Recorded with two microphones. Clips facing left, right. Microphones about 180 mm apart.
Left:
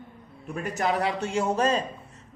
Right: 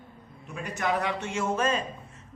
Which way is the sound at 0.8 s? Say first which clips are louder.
Left 2 dB; 35° left (ahead or behind).